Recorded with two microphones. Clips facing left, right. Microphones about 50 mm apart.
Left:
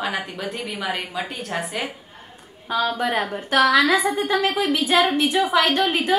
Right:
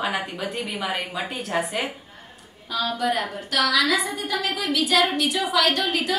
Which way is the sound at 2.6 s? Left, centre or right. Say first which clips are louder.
Left 2 dB; left.